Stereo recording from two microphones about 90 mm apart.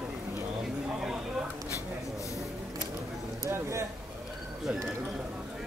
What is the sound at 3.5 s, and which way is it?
Speech, 30° right (ahead or behind).